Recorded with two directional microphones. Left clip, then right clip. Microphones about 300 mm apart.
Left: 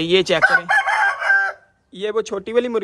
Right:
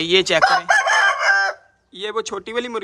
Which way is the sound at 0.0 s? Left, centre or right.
Centre.